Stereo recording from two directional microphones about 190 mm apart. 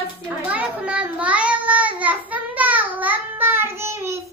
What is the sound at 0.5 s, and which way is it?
Child singing, 5° right (ahead or behind).